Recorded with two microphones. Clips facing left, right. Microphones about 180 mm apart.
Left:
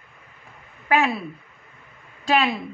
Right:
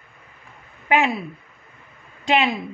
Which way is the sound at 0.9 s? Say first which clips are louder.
Right 1 dB; 20° right (ahead or behind).